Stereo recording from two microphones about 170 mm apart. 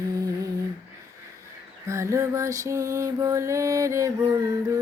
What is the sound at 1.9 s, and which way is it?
Mantra, 15° right (ahead or behind).